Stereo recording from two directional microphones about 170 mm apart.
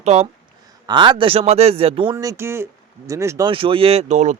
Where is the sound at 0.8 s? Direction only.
25° right (ahead or behind).